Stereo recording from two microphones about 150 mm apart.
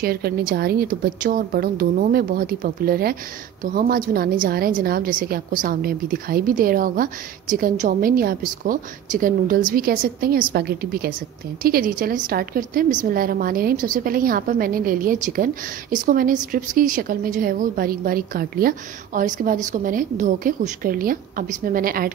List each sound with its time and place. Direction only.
0.0 s a woman's voice: 90° right
3.6 s a woman's voice: 75° right (ahead or behind)
10.5 s a woman's voice: 90° right; by 22.1 s 75° right (ahead or behind)